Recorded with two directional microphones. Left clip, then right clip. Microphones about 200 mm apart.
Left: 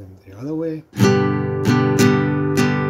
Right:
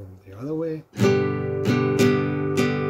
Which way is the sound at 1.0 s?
45° left (ahead or behind).